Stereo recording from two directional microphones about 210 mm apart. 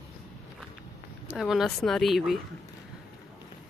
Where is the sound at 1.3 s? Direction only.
Centre (ahead or behind).